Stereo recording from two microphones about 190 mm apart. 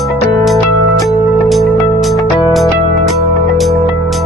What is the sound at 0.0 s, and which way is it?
Music, centre (ahead or behind).